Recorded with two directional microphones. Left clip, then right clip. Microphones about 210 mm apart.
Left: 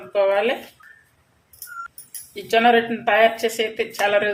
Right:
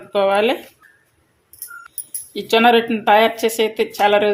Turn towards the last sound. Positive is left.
turn(degrees=-35)  # may be behind; listen again after turning